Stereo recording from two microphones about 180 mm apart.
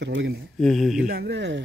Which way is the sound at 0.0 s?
75° right (ahead or behind).